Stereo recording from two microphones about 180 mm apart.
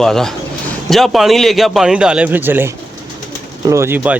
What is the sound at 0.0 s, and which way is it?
Speech, centre (ahead or behind).